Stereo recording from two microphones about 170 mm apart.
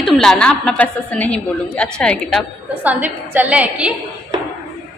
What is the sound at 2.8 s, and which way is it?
A woman's voice, 10° right (ahead or behind).